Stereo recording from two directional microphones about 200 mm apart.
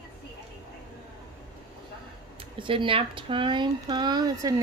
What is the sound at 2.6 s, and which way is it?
Speech, 25° right (ahead or behind).